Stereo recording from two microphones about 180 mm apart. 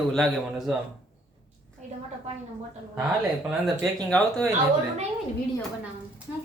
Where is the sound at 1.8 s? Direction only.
40° right (ahead or behind).